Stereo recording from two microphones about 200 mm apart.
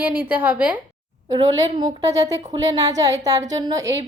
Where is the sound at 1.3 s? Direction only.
20° right (ahead or behind).